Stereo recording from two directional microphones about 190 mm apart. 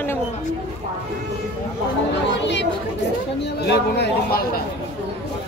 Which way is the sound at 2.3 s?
70° left (ahead or behind).